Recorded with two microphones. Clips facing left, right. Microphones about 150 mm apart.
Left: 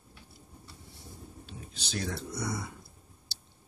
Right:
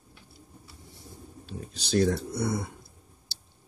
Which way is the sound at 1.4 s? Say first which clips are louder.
Right 10 dB; 35° right (ahead or behind).